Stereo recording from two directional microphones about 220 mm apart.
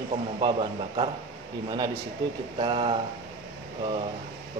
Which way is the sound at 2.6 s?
25° right (ahead or behind).